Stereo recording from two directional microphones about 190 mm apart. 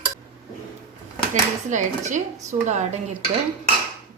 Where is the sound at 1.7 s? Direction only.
40° right (ahead or behind).